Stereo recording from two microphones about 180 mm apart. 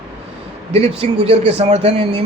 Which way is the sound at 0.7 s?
35° right (ahead or behind).